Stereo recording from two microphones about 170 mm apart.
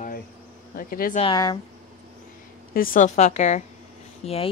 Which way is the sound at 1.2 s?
25° left (ahead or behind).